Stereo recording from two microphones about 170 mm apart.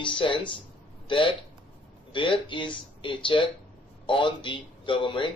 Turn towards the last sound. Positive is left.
turn(degrees=30)  # may be behind; listen again after turning